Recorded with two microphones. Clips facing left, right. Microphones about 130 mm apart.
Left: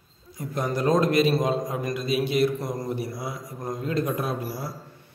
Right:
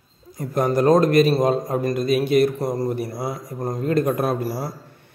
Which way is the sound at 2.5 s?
35° right (ahead or behind).